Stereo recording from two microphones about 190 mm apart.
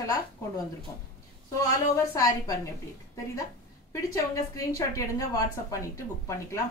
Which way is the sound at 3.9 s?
15° left (ahead or behind).